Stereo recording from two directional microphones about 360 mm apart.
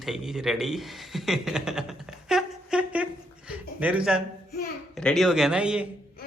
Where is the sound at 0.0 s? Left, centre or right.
Centre.